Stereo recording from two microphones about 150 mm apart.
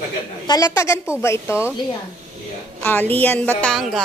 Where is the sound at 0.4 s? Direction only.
25° left (ahead or behind).